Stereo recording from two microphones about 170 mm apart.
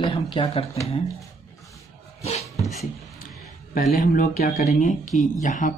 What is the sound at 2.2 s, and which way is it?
Dog, 40° left (ahead or behind).